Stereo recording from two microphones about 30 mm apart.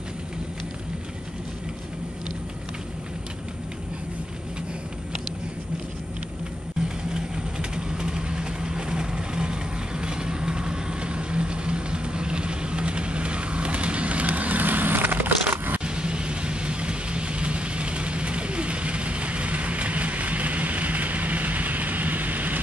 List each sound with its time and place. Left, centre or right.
7.2 s vehicle: right
15.8 s vehicle: right